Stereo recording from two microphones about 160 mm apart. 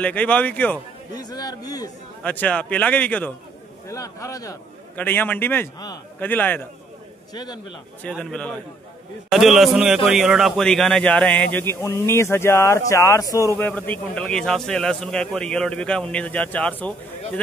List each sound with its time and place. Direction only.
0.0 s speech: 10° left (ahead or behind)
1.1 s a man's voice: 25° left (ahead or behind)
2.2 s speech: 10° left (ahead or behind)
3.8 s a man's voice: 20° left (ahead or behind)
7.3 s a man's voice: 25° left (ahead or behind)
8.1 s a man's voice: 5° left (ahead or behind); by 13.5 s 20° left (ahead or behind)
13.6 s a man's voice: 10° left (ahead or behind)